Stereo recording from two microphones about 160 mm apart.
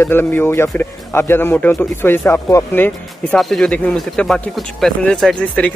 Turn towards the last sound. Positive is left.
turn(degrees=5)  # may be behind; listen again after turning